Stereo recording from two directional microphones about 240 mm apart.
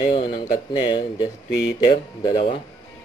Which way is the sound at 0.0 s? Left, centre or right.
Centre.